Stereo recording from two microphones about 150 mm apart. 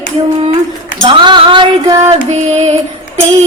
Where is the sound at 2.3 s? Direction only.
45° right (ahead or behind).